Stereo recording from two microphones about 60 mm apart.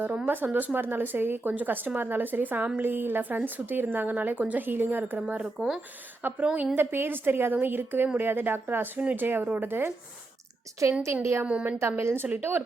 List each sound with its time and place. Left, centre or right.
0.3 s speech: right
5.1 s speech: centre
5.5 s speech: centre
6.4 s a woman's voice: right
6.7 s speech: right
11.1 s a woman's voice: right
11.4 s a woman's voice: centre
11.8 s a woman's voice: right